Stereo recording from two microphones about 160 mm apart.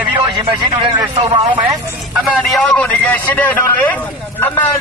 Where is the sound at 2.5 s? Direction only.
5° left (ahead or behind).